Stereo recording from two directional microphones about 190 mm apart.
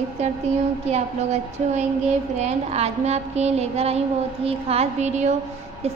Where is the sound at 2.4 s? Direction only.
35° right (ahead or behind).